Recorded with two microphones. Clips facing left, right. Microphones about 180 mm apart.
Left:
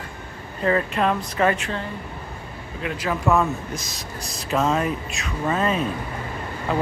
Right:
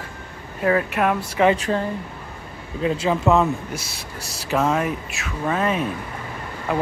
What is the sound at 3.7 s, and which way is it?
Speech, 10° right (ahead or behind).